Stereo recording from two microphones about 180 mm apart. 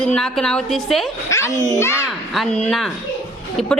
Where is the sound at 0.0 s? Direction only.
5° left (ahead or behind).